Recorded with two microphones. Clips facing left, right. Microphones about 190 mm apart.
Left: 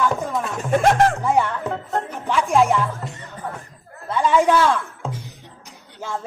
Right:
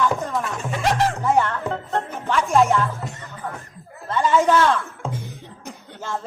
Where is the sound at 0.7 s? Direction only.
50° left (ahead or behind).